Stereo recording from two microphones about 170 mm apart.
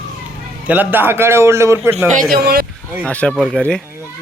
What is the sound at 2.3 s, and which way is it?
Speech, 60° right (ahead or behind).